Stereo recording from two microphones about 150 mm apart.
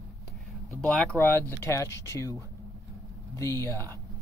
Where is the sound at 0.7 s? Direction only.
5° left (ahead or behind).